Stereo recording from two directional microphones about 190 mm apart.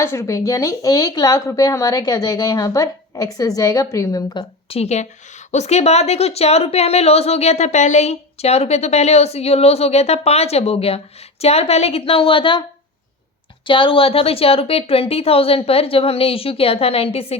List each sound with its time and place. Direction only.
0.0 s a woman's voice: 15° left (ahead or behind)
4.7 s a woman's voice: 35° left (ahead or behind)
13.7 s a woman's voice: 25° left (ahead or behind)